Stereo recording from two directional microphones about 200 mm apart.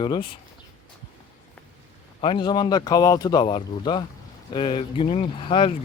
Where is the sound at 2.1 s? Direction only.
25° left (ahead or behind).